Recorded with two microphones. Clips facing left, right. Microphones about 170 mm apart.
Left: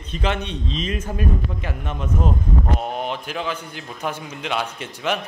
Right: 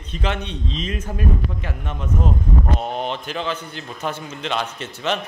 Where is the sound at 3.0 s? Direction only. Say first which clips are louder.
Right 1 dB; 10° left (ahead or behind).